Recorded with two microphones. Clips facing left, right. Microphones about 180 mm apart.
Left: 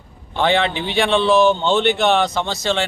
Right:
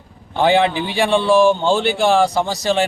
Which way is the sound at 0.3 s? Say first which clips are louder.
Right 3 dB; 15° right (ahead or behind).